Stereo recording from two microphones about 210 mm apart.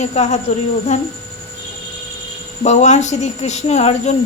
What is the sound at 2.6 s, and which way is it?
Speech, 35° left (ahead or behind).